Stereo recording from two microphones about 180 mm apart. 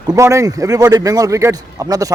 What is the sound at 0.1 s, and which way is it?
A man's voice, 15° right (ahead or behind).